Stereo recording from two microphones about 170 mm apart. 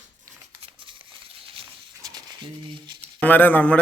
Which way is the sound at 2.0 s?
25° right (ahead or behind).